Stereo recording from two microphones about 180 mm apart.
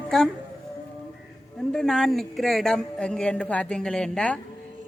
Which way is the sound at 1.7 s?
5° left (ahead or behind).